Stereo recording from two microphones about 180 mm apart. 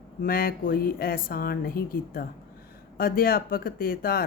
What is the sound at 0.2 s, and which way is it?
Speech, 55° left (ahead or behind).